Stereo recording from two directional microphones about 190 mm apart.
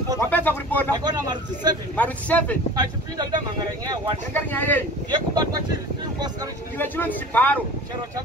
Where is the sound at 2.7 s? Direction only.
20° right (ahead or behind).